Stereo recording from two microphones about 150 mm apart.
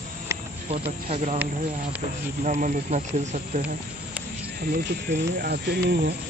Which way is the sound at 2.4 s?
55° right (ahead or behind).